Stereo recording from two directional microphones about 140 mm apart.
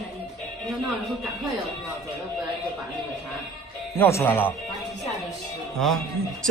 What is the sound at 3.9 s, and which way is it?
Speech, 20° left (ahead or behind).